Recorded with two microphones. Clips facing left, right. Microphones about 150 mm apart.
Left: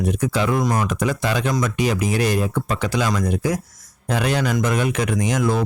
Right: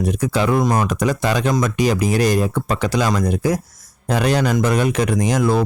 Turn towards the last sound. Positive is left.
turn(degrees=-35)  # may be behind; listen again after turning